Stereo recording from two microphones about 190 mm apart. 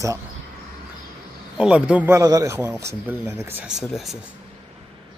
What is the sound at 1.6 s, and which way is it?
A man's voice, 5° right (ahead or behind).